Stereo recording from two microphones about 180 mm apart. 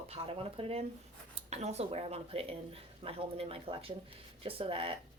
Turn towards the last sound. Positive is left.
turn(degrees=-30)  # may be behind; listen again after turning